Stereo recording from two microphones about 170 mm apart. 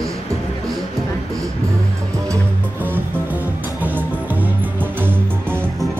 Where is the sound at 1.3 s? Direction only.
20° right (ahead or behind).